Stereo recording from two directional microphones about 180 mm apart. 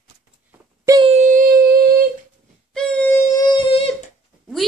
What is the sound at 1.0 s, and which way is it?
Humming, 40° right (ahead or behind).